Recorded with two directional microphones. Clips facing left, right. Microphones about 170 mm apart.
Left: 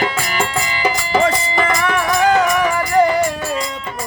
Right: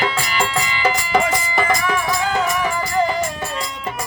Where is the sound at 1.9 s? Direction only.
75° left (ahead or behind).